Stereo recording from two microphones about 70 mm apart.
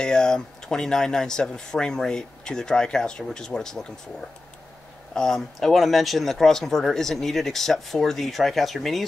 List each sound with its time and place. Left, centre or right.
0.0 s speech: centre
5.1 s speech: centre